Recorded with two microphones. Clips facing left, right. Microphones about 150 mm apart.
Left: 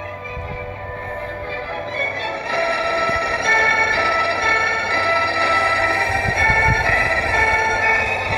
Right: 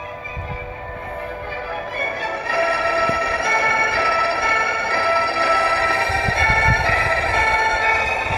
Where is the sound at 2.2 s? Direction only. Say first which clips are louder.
Right 1 dB; 25° left (ahead or behind).